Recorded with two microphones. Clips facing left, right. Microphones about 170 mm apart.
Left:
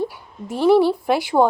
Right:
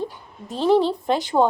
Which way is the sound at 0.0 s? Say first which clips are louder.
Left 4 dB; 10° left (ahead or behind).